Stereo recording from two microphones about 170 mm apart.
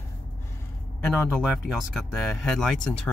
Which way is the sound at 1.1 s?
Centre (ahead or behind).